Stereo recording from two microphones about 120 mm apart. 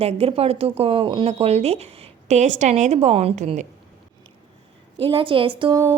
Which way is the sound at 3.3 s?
80° right.